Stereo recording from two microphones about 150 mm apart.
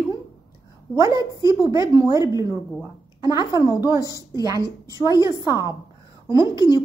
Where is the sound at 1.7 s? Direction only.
25° right (ahead or behind).